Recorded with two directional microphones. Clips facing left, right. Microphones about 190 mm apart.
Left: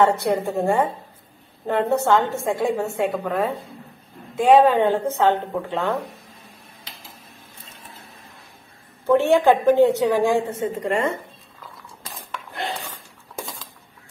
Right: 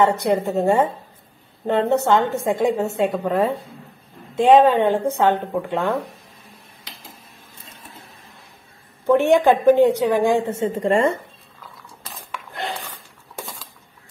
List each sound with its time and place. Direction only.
0.0 s a woman's voice: 20° right (ahead or behind)
9.0 s a woman's voice: 15° right (ahead or behind); by 11.1 s 30° right (ahead or behind)